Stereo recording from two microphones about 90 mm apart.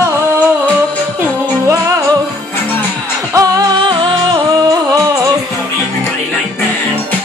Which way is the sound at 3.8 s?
65° right (ahead or behind).